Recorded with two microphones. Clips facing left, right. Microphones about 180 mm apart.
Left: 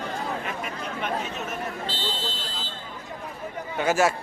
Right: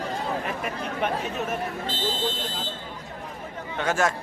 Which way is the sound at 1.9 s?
50° right (ahead or behind).